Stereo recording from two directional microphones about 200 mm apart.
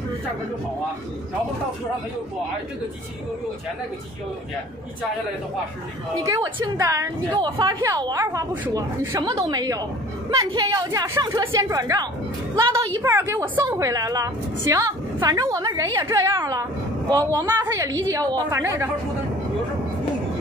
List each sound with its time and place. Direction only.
6.2 s a woman's voice: 15° right (ahead or behind)